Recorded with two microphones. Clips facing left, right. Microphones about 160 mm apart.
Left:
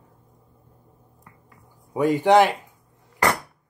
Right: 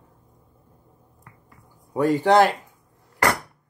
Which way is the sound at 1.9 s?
15° left (ahead or behind).